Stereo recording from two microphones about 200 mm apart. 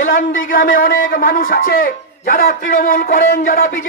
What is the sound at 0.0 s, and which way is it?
A man's voice, 40° left (ahead or behind).